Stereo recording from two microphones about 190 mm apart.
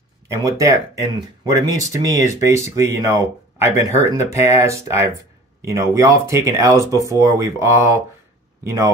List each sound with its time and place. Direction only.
0.3 s speech: 15° right (ahead or behind)